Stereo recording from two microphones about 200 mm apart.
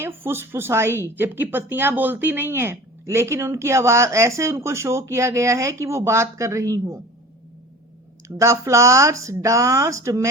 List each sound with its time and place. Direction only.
0.2 s speech: 10° right (ahead or behind)
8.4 s speech: 15° right (ahead or behind)